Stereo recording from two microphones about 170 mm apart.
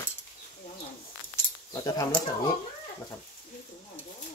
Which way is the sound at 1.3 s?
20° left (ahead or behind).